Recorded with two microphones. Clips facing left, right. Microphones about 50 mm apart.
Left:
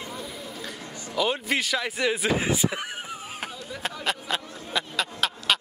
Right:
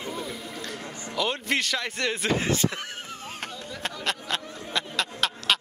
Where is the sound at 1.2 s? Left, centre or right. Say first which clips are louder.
Left 1 dB; centre.